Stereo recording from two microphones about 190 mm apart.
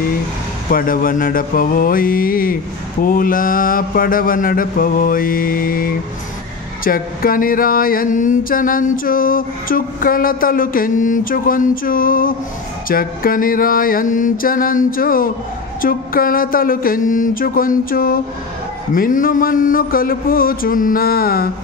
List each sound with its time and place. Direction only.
0.7 s mantra: 50° left (ahead or behind)